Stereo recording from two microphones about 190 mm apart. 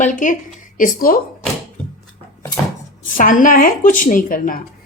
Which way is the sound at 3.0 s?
45° left (ahead or behind).